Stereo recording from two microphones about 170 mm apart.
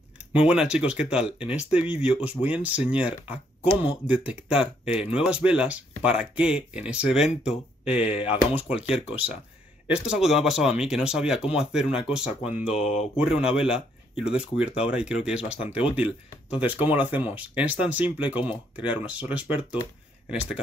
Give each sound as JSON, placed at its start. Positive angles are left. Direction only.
{"t": 0.3, "sound": "speech", "side_deg": -5}
{"t": 12.7, "sound": "speech", "side_deg": 35}
{"t": 13.2, "sound": "speech", "side_deg": -5}